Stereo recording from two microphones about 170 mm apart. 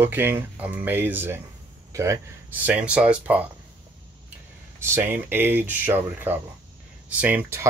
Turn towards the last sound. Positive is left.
turn(degrees=-10)  # may be behind; listen again after turning